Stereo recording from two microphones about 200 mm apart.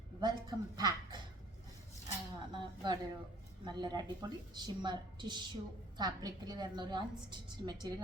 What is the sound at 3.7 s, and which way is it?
A woman's voice, 20° right (ahead or behind).